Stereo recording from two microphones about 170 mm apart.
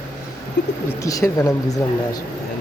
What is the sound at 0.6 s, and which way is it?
Speech, 90° left.